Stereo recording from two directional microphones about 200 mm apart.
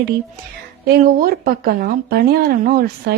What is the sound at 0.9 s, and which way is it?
A woman's voice, 45° right (ahead or behind).